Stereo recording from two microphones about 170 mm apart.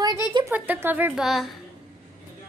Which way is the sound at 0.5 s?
10° right (ahead or behind).